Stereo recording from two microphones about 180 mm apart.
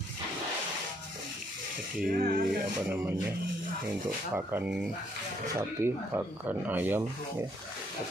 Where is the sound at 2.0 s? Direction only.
55° right (ahead or behind).